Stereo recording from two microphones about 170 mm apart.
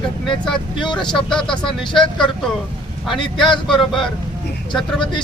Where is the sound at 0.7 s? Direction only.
25° left (ahead or behind).